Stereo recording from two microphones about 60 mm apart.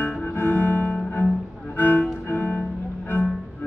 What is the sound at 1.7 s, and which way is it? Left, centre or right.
Music, left.